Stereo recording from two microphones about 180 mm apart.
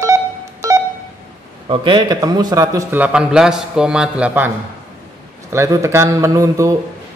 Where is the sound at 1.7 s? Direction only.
25° right (ahead or behind).